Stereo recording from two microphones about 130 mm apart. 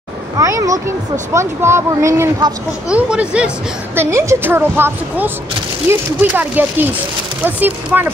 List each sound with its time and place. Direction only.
0.4 s speech: 25° right (ahead or behind)
2.9 s a woman's voice: 10° right (ahead or behind)
4.0 s a woman's voice: 20° right (ahead or behind)